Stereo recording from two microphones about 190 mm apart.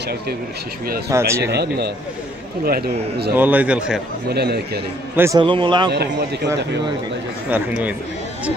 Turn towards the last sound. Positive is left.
turn(degrees=-10)  # may be behind; listen again after turning